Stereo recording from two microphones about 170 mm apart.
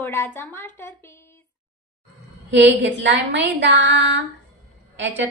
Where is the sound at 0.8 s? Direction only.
15° left (ahead or behind).